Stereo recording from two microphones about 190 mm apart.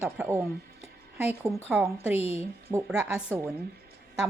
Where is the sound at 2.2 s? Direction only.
35° left (ahead or behind).